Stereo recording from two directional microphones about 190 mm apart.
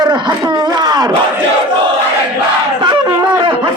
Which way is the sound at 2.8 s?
20° right (ahead or behind).